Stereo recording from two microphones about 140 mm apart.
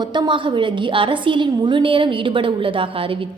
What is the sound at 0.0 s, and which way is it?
A woman's voice, 35° right (ahead or behind).